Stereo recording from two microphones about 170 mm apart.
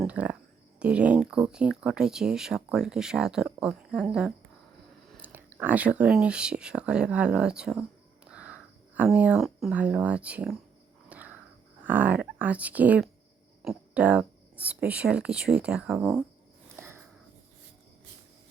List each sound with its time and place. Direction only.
0.0 s speech: 5° right (ahead or behind)
11.1 s crow: 10° right (ahead or behind)
11.9 s speech: 10° right (ahead or behind)
16.7 s sniff: 15° right (ahead or behind)